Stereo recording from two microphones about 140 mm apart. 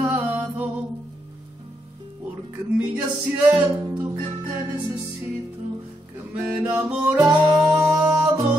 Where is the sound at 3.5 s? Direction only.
20° right (ahead or behind).